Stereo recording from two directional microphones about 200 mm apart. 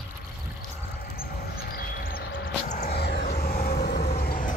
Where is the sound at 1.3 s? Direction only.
50° left (ahead or behind).